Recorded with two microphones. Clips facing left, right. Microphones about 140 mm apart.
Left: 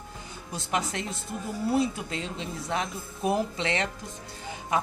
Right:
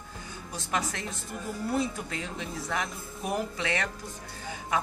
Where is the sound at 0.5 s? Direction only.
20° left (ahead or behind).